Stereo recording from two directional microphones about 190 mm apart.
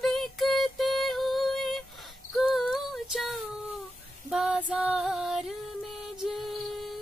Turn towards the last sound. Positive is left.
turn(degrees=0)  # may be behind; listen again after turning